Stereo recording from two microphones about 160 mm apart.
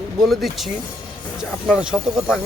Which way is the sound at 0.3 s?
Centre (ahead or behind).